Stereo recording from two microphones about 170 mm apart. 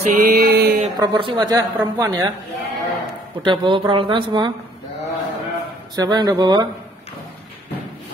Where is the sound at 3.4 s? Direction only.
30° right (ahead or behind).